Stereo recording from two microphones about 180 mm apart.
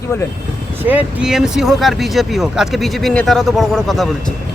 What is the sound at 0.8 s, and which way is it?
Speech, 10° right (ahead or behind).